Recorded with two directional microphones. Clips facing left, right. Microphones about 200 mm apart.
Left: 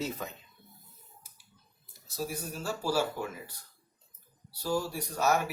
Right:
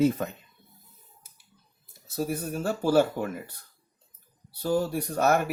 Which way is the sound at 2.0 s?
55° right (ahead or behind).